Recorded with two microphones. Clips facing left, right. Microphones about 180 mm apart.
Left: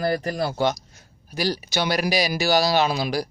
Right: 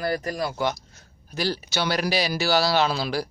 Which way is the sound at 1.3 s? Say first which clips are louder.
Left 2 dB; 15° left (ahead or behind).